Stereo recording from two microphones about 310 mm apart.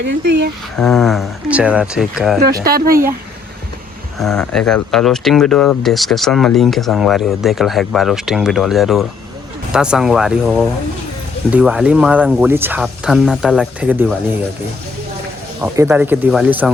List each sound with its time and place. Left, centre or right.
0.0 s speech: right
0.8 s speech: centre
2.6 s speech: right
4.2 s speech: centre
15.6 s speech: centre